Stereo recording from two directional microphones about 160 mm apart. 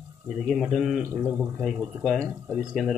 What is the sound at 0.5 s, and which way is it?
Speech, centre (ahead or behind).